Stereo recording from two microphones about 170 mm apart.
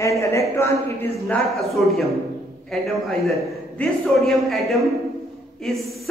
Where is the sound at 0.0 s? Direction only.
15° left (ahead or behind).